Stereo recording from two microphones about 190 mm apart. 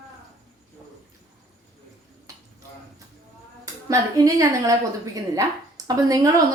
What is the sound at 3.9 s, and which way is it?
A woman's voice, 15° right (ahead or behind).